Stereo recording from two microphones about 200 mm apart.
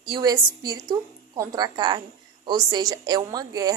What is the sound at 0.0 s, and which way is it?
A woman's voice, 20° right (ahead or behind).